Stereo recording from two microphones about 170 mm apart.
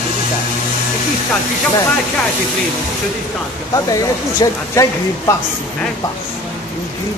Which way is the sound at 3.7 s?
20° left (ahead or behind).